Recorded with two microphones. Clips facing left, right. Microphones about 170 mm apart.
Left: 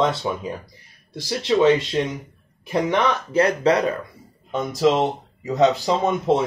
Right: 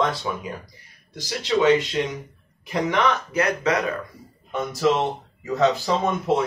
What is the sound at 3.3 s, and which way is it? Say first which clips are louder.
Speech: left 4 dB; 30° left (ahead or behind).